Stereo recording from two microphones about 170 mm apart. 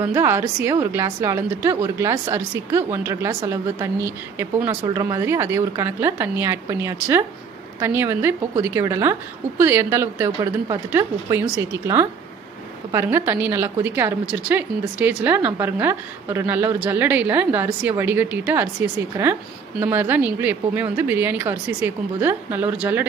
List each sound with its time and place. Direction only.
0.0 s speech: 15° right (ahead or behind)
19.8 s speech: 10° right (ahead or behind)